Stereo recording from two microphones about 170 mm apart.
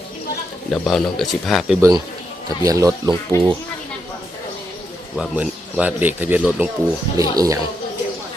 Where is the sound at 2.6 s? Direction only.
20° right (ahead or behind).